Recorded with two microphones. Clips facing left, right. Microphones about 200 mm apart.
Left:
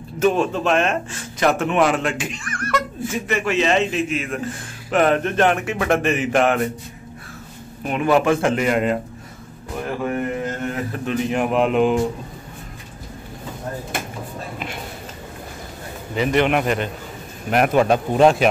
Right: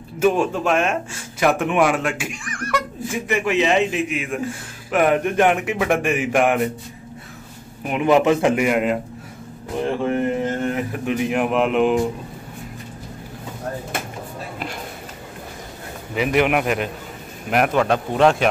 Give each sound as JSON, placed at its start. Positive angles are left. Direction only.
{"t": 0.2, "sound": "speech", "side_deg": -10}
{"t": 7.8, "sound": "speech", "side_deg": -15}
{"t": 9.8, "sound": "speech", "side_deg": -25}
{"t": 16.2, "sound": "a man's voice", "side_deg": -5}
{"t": 17.7, "sound": "a man's voice", "side_deg": 15}